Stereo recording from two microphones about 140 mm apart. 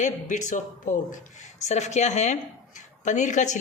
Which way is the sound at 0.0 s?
60° left (ahead or behind).